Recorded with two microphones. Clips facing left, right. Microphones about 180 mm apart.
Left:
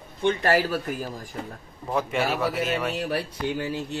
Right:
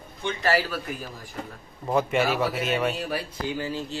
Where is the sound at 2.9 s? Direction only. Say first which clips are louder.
Left 2 dB; 65° left (ahead or behind).